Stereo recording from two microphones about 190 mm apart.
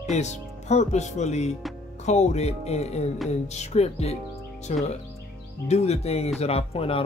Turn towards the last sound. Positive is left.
turn(degrees=30)  # may be behind; listen again after turning